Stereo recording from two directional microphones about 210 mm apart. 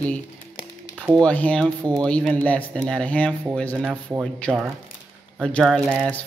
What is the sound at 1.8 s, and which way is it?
Speech, 20° right (ahead or behind).